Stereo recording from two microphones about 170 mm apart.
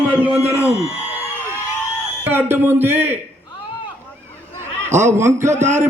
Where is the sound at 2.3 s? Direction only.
15° right (ahead or behind).